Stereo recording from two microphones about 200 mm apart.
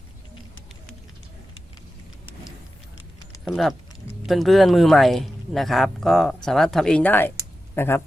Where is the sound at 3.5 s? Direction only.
Centre (ahead or behind).